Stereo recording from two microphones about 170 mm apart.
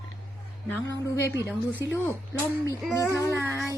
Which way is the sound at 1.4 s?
15° right (ahead or behind).